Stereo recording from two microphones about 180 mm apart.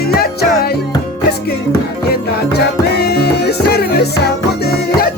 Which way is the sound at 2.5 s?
65° left (ahead or behind).